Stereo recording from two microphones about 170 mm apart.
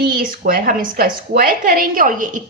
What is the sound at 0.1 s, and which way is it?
A woman's voice, 55° right (ahead or behind).